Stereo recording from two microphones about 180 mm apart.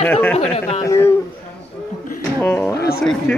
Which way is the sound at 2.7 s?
60° left (ahead or behind).